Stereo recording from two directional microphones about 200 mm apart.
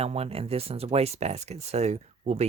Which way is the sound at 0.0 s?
30° right (ahead or behind).